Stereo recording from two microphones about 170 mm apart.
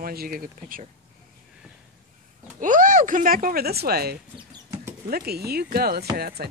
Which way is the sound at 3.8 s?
65° right (ahead or behind).